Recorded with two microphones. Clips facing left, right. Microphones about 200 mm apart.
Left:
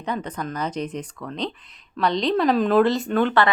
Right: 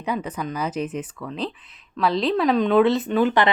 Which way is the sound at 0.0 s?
10° right (ahead or behind).